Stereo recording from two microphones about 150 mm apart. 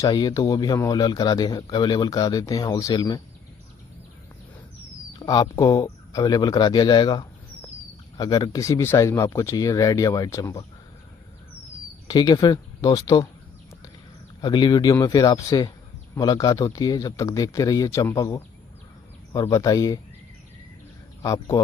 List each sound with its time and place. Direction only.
0.0 s speech: 25° left (ahead or behind)
5.2 s speech: 25° left (ahead or behind)
12.1 s speech: 30° left (ahead or behind)
14.4 s speech: 30° left (ahead or behind)
21.2 s speech: 25° left (ahead or behind)